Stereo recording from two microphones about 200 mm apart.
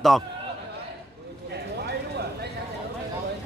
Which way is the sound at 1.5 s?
55° right (ahead or behind).